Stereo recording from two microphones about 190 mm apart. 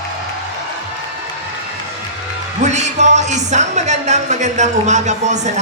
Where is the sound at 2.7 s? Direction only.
35° right (ahead or behind).